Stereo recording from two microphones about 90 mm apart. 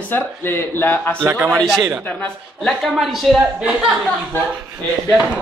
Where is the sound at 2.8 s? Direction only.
Centre (ahead or behind).